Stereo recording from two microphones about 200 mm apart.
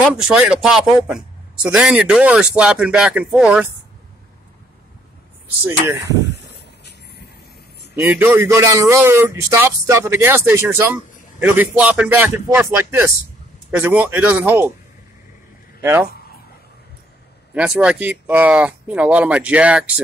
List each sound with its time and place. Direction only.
0.0 s speech: 5° right (ahead or behind)
7.9 s a man's voice: 10° right (ahead or behind)
15.8 s speech: 10° right (ahead or behind)
17.6 s a man's voice: 5° right (ahead or behind)